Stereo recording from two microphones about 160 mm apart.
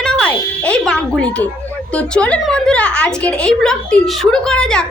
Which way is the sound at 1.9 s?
5° left (ahead or behind).